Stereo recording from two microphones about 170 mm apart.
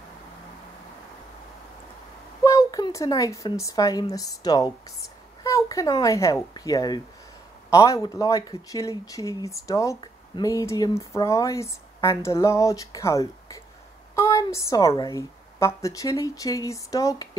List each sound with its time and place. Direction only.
2.4 s a woman's voice: 20° left (ahead or behind)